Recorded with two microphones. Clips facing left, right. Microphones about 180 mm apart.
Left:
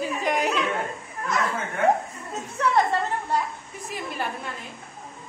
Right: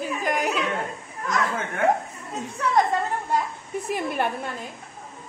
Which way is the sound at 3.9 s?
60° right (ahead or behind).